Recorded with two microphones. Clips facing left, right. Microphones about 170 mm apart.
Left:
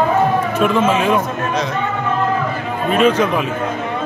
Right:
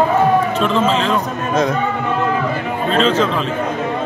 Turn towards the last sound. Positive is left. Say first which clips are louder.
# left 1 dB
turn(degrees=15)  # may be behind; listen again after turning